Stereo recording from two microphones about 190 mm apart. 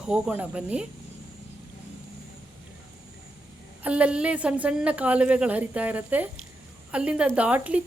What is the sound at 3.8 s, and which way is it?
A woman's voice, 5° right (ahead or behind).